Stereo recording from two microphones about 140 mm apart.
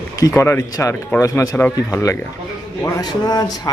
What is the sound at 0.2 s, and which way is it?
Speech, 20° left (ahead or behind).